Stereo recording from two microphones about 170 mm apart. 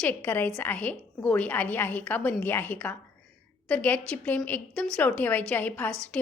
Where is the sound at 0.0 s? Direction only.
10° left (ahead or behind).